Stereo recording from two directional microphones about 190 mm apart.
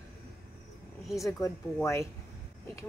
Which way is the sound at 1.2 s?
15° left (ahead or behind).